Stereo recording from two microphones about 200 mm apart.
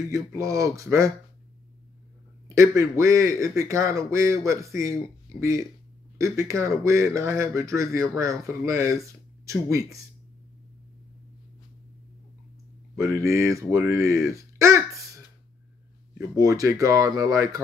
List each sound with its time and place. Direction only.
0.1 s speech: 15° right (ahead or behind)
2.4 s speech: 15° right (ahead or behind)
12.9 s speech: 15° right (ahead or behind)
16.2 s speech: 15° right (ahead or behind)